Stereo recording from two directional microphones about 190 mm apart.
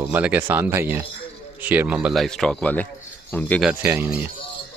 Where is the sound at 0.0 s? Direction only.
10° right (ahead or behind); by 3.6 s 5° left (ahead or behind).